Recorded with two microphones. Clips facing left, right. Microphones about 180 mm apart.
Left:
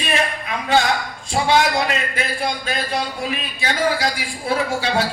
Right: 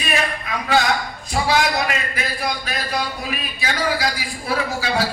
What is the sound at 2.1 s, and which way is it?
Speech, 25° left (ahead or behind).